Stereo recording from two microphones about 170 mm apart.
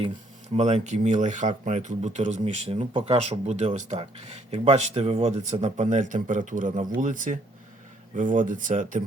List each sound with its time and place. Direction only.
0.5 s speech: 40° right (ahead or behind)